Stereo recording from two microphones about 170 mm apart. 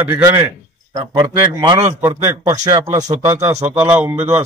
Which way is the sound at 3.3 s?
40° right (ahead or behind).